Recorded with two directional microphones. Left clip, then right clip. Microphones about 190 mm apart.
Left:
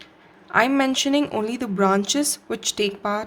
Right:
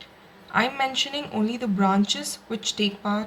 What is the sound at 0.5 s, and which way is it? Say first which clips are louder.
A woman's voice: left 4 dB; 55° left (ahead or behind).